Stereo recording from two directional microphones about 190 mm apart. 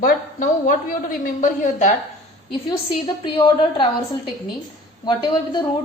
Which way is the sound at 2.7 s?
25° left (ahead or behind).